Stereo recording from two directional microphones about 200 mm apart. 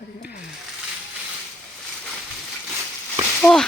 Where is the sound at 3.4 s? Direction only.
5° left (ahead or behind).